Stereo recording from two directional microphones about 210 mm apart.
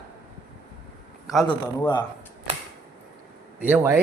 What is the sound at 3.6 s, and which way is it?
Speech, 10° right (ahead or behind).